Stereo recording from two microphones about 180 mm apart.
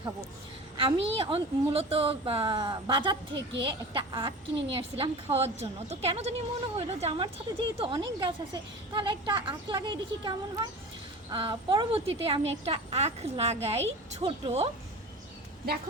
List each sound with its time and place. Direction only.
0.8 s a woman's voice: 30° right (ahead or behind)